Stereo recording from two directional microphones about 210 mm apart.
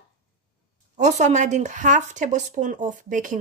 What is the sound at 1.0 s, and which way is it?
Speech, 35° right (ahead or behind).